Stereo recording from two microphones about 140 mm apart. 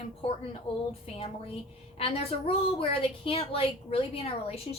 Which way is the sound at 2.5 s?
40° left (ahead or behind).